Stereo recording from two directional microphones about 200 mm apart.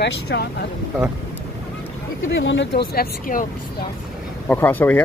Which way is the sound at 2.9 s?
45° left (ahead or behind).